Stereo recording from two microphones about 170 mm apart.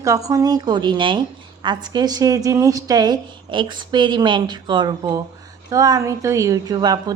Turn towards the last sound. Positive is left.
turn(degrees=-25)  # may be behind; listen again after turning